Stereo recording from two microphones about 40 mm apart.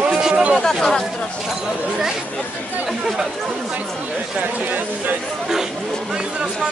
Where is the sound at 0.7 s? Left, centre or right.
Centre.